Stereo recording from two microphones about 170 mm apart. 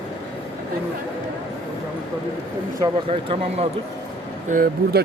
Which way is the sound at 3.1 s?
35° right (ahead or behind).